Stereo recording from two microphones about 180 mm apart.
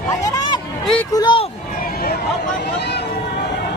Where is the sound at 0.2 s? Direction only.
20° left (ahead or behind).